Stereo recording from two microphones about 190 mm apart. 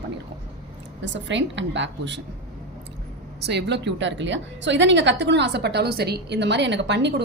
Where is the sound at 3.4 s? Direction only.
65° right (ahead or behind).